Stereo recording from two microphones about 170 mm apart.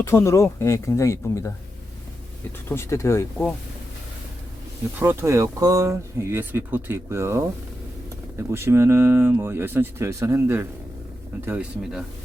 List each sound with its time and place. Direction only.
0.0 s speech: 15° left (ahead or behind)
2.6 s speech: 15° left (ahead or behind)
4.9 s speech: 15° right (ahead or behind)